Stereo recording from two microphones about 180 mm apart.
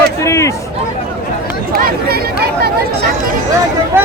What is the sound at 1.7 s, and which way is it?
Chatter, 55° right (ahead or behind).